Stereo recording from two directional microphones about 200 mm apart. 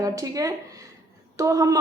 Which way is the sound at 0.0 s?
15° right (ahead or behind).